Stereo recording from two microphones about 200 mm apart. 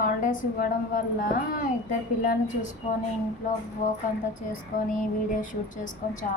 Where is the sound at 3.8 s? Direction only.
40° left (ahead or behind).